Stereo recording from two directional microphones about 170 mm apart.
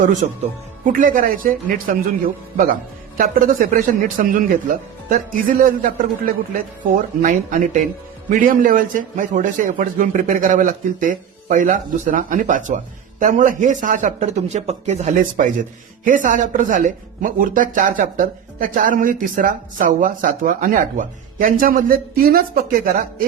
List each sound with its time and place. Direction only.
0.0 s a man's voice: 45° right (ahead or behind)
3.2 s a man's voice: 50° right (ahead or behind)